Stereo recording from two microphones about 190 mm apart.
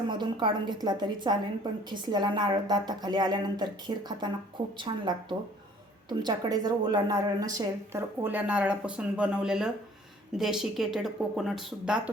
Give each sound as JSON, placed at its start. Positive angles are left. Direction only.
{"t": 0.1, "sound": "a woman's voice", "side_deg": -25}